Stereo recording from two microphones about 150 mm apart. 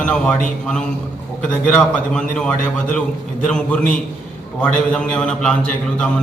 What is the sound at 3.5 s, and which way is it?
Speech, 5° left (ahead or behind).